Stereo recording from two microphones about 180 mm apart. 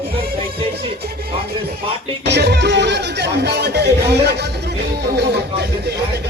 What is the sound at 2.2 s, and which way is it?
Speech, 70° right (ahead or behind).